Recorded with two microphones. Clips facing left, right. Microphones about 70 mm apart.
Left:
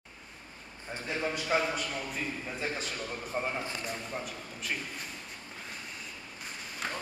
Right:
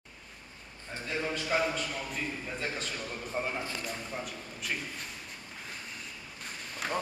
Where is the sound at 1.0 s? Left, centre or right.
Centre.